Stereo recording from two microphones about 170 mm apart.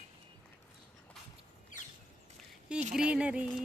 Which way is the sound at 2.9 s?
5° right (ahead or behind).